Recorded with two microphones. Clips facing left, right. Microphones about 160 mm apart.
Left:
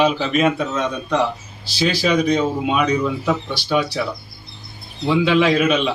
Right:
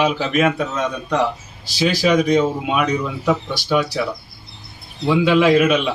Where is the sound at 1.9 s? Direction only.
15° right (ahead or behind).